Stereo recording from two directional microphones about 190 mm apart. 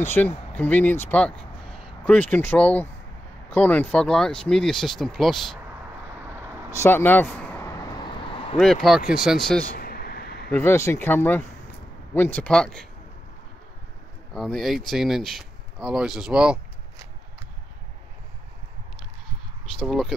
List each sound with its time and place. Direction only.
0.0 s speech: 10° left (ahead or behind)
6.7 s vehicle: 15° left (ahead or behind)
9.1 s speech: centre (ahead or behind)
9.8 s a sound: 50° left (ahead or behind)
10.5 s speech: 10° left (ahead or behind)
14.3 s speech: centre (ahead or behind)
19.8 s speech: centre (ahead or behind)